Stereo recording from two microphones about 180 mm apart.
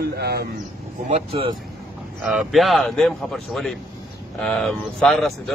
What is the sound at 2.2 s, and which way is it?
Speech, centre (ahead or behind).